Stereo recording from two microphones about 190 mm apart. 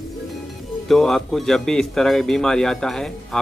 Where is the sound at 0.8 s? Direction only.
Centre (ahead or behind).